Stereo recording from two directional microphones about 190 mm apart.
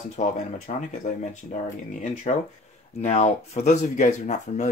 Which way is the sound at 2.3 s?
35° left (ahead or behind).